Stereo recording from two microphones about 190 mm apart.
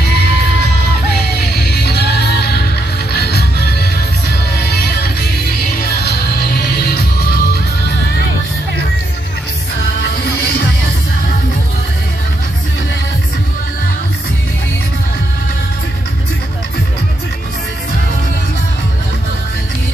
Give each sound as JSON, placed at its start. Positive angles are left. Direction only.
{"t": 1.7, "sound": "music", "side_deg": 60}
{"t": 9.9, "sound": "music", "side_deg": 60}